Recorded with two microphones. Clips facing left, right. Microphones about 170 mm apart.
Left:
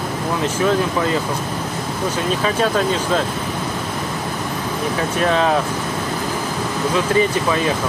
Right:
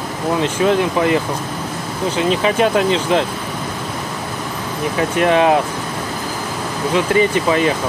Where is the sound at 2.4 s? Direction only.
20° right (ahead or behind).